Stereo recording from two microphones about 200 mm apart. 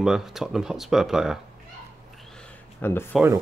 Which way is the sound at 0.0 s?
Centre (ahead or behind).